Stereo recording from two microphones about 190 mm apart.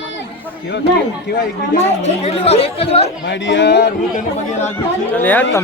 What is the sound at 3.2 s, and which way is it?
A man's voice, 70° left (ahead or behind).